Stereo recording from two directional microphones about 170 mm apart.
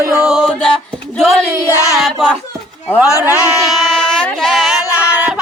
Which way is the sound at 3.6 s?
Centre (ahead or behind).